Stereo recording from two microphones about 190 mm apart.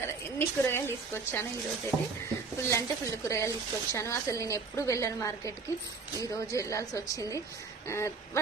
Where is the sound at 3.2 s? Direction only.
15° left (ahead or behind).